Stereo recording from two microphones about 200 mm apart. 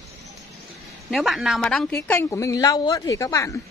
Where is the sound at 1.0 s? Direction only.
Centre (ahead or behind); by 3.6 s 15° left (ahead or behind).